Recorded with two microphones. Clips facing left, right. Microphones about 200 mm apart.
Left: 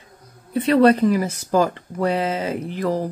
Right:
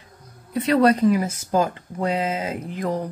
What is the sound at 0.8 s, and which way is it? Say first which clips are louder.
Speech: left 2 dB; 35° left (ahead or behind).